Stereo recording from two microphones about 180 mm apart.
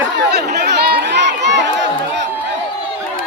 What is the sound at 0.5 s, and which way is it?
Chatter, 60° right (ahead or behind).